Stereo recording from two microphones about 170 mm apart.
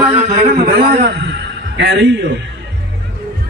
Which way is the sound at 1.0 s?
85° right.